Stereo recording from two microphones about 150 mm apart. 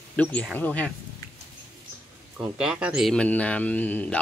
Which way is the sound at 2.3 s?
5° right (ahead or behind).